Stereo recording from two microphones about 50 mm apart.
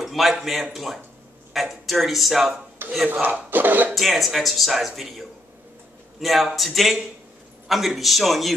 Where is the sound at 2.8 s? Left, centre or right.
Right.